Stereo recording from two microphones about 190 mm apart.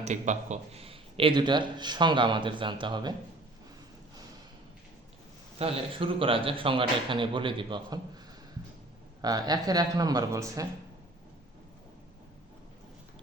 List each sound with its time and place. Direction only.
0.0 s a man's voice: 40° right (ahead or behind); by 3.2 s 25° right (ahead or behind)
5.5 s a man's voice: 30° right (ahead or behind)
9.2 s a man's voice: 20° right (ahead or behind)